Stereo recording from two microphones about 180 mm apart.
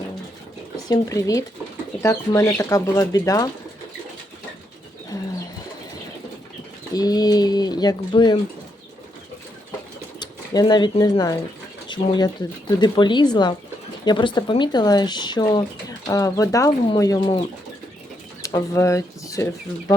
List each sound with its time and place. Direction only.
0.9 s speech: 20° left (ahead or behind)
6.9 s speech: 20° left (ahead or behind)
10.2 s speech: 25° left (ahead or behind)
18.4 s speech: 20° left (ahead or behind)